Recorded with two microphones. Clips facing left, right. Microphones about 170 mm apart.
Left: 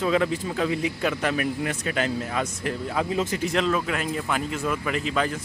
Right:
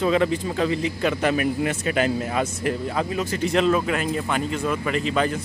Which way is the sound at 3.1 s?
20° left (ahead or behind).